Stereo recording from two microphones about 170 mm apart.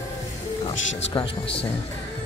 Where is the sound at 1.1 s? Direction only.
20° left (ahead or behind).